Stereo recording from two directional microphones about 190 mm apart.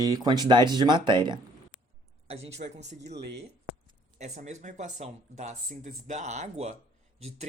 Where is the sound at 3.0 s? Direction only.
60° right (ahead or behind).